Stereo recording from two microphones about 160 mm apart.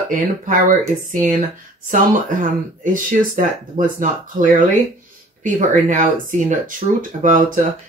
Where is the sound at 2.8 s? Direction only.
55° right (ahead or behind).